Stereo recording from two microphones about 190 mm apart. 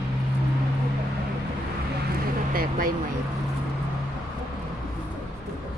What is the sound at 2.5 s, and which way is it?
Vehicle, 50° right (ahead or behind).